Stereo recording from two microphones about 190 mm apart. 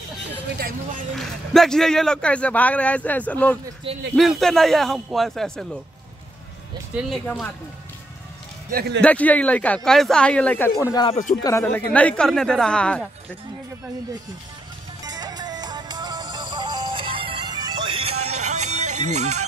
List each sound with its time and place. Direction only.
0.3 s speech: 55° right (ahead or behind)
1.1 s a man's voice: centre (ahead or behind)
3.9 s speech: 30° right (ahead or behind)
4.2 s speech: centre (ahead or behind)
7.1 s speech: centre (ahead or behind)
8.6 s speech: 55° right (ahead or behind)
9.0 s a man's voice: 5° left (ahead or behind)
10.8 s speech: 20° left (ahead or behind)
15.0 s music: 20° right (ahead or behind); by 19.4 s 35° right (ahead or behind)